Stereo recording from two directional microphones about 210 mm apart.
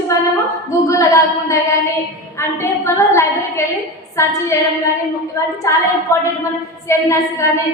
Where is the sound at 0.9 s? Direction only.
15° left (ahead or behind).